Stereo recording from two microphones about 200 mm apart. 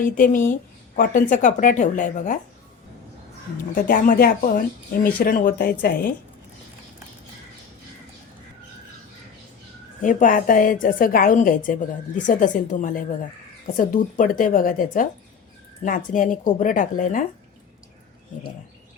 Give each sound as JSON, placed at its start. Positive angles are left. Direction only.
{"t": 0.0, "sound": "speech", "side_deg": 40}
{"t": 3.8, "sound": "a woman's voice", "side_deg": 45}
{"t": 10.0, "sound": "a woman's voice", "side_deg": 40}